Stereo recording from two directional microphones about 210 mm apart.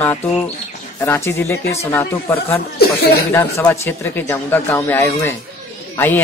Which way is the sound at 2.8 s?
50° left (ahead or behind).